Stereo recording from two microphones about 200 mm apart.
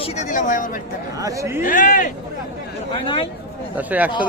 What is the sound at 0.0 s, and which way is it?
Speech, 35° left (ahead or behind).